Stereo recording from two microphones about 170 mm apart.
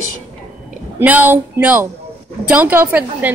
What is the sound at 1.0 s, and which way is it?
A woman's voice, 10° right (ahead or behind).